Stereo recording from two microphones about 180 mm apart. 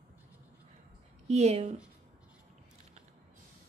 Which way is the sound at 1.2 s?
35° right (ahead or behind).